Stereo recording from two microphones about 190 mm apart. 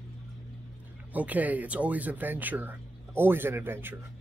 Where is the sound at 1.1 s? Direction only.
10° right (ahead or behind).